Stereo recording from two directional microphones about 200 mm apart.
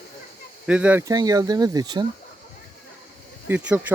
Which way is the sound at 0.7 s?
5° right (ahead or behind).